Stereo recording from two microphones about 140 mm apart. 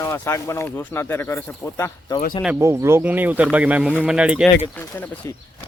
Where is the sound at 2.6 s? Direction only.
20° right (ahead or behind).